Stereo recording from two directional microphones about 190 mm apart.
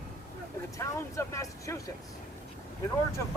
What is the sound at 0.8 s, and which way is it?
Speech, 15° left (ahead or behind).